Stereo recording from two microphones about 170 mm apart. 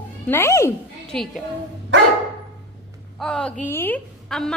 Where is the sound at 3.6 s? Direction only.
10° left (ahead or behind).